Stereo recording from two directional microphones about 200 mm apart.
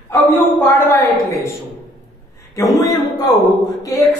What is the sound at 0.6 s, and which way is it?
Speech, 10° left (ahead or behind).